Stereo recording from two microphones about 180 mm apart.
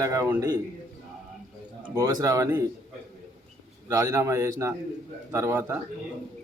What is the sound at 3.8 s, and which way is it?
A man's voice, 15° right (ahead or behind).